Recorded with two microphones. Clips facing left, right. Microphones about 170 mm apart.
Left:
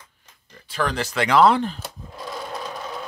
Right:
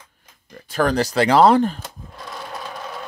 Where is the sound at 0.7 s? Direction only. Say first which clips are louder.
Right 6 dB; 40° right (ahead or behind).